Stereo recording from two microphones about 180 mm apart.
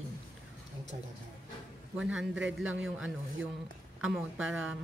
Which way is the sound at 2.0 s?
5° right (ahead or behind).